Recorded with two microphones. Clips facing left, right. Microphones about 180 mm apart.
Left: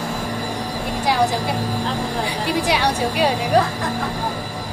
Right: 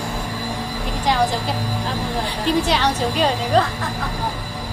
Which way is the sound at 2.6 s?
10° left (ahead or behind).